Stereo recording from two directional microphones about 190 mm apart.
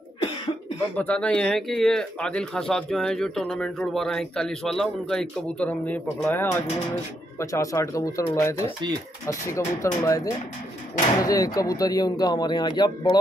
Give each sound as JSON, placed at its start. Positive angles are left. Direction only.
{"t": 0.9, "sound": "speech", "side_deg": 5}
{"t": 11.2, "sound": "speech", "side_deg": 20}